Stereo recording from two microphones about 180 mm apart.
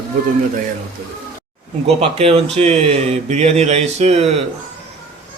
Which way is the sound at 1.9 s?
35° right (ahead or behind).